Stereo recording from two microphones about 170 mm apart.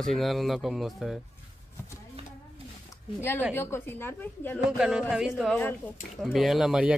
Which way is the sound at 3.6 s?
15° left (ahead or behind).